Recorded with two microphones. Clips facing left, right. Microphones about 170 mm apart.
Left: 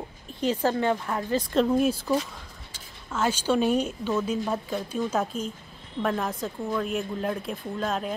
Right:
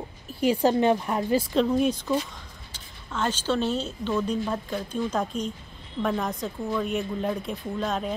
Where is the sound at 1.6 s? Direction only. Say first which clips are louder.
Even; 5° left (ahead or behind).